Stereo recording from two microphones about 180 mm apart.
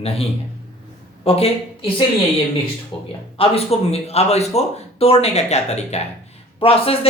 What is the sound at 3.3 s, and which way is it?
Speech, 30° left (ahead or behind).